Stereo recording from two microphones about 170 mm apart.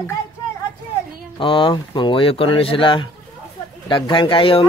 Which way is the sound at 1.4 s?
30° left (ahead or behind).